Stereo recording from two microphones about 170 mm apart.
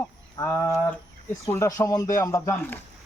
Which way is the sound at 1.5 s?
15° left (ahead or behind).